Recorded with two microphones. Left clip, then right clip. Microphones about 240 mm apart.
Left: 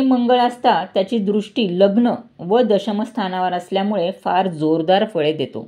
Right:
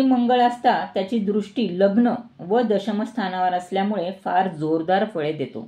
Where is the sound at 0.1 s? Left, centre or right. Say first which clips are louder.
Left 5 dB; left.